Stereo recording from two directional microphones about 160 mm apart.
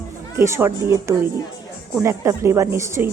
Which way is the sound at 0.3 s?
15° right (ahead or behind).